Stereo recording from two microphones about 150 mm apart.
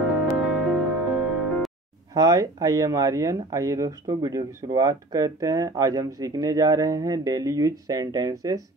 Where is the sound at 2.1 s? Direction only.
25° right (ahead or behind).